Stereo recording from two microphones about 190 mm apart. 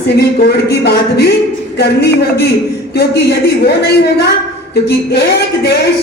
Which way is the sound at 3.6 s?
60° left (ahead or behind).